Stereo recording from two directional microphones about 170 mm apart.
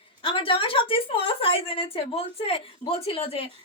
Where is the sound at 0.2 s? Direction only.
30° left (ahead or behind).